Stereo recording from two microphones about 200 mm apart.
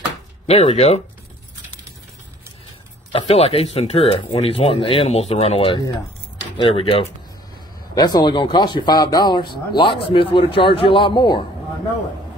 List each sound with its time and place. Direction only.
0.5 s speech: 30° left (ahead or behind)
3.1 s speech: 30° left (ahead or behind)